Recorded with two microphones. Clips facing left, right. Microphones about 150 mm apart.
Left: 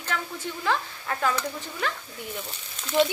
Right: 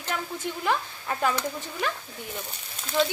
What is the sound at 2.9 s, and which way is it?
Speech, 20° left (ahead or behind).